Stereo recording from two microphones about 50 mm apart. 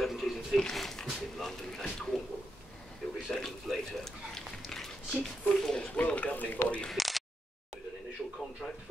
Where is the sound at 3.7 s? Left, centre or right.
Centre.